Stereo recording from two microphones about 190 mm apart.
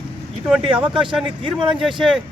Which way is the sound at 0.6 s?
25° right (ahead or behind).